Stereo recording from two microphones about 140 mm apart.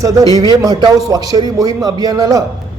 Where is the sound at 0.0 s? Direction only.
25° right (ahead or behind).